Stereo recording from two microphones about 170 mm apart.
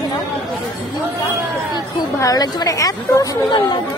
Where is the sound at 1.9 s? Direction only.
20° left (ahead or behind).